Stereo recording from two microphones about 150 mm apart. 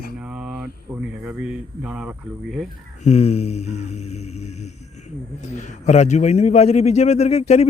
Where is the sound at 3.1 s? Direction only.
45° left (ahead or behind).